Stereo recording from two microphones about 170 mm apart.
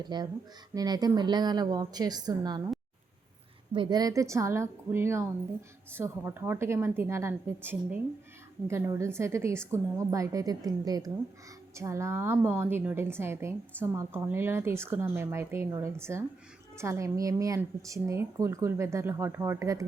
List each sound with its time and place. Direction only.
0.0 s a woman's voice: 25° right (ahead or behind)
3.7 s a woman's voice: 25° right (ahead or behind)